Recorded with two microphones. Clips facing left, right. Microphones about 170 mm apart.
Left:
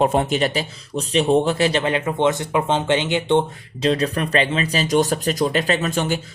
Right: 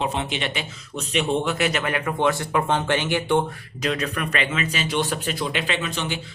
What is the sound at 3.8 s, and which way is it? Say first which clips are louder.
Speech: left 6 dB; 35° left (ahead or behind).